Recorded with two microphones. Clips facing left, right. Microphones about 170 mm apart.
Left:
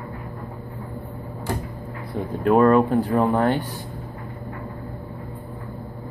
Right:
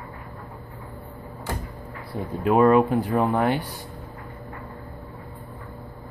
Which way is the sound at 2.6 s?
15° right (ahead or behind).